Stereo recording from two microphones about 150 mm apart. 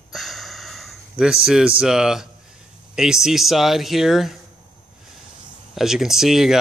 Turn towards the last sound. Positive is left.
turn(degrees=-5)  # may be behind; listen again after turning